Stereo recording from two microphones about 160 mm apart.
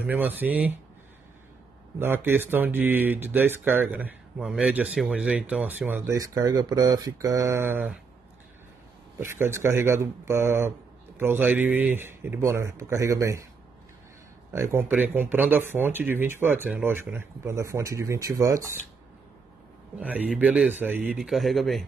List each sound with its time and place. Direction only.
0.0 s speech: 10° right (ahead or behind)
2.0 s speech: 15° right (ahead or behind)
9.2 s speech: 15° right (ahead or behind)
14.5 s speech: 15° right (ahead or behind)
20.0 s speech: 10° right (ahead or behind)